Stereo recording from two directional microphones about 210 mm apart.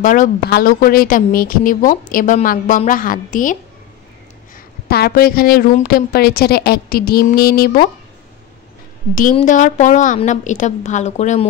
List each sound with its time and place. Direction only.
0.0 s speech: 40° left (ahead or behind)
4.8 s a woman's voice: 50° left (ahead or behind)
9.1 s speech: 40° left (ahead or behind)